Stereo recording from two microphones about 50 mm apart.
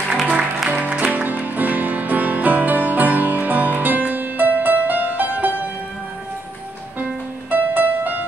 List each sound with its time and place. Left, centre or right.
0.7 s music: right
7.5 s music: right